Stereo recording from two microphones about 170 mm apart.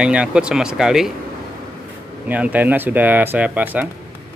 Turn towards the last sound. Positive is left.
turn(degrees=-10)  # may be behind; listen again after turning